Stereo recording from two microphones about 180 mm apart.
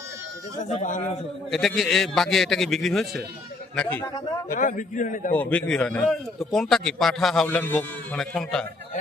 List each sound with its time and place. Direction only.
0.6 s a man's voice: 40° left (ahead or behind)
1.5 s a man's voice: centre (ahead or behind)
4.4 s a man's voice: 50° left (ahead or behind)
5.3 s a man's voice: 10° left (ahead or behind)